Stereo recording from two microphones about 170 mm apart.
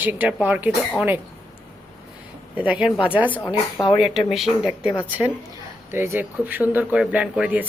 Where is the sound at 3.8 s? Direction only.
20° left (ahead or behind).